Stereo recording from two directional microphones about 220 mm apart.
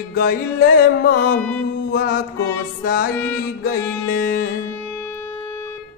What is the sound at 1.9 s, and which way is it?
Music, 40° left (ahead or behind).